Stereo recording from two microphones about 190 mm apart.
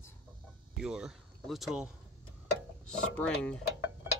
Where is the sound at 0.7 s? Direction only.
Centre (ahead or behind).